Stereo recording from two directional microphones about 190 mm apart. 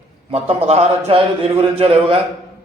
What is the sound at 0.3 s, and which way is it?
A man's voice, 30° right (ahead or behind).